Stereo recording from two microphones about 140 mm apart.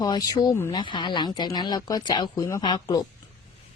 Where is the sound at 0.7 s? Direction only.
35° left (ahead or behind).